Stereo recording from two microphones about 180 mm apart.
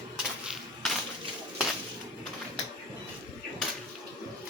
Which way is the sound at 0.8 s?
Centre (ahead or behind).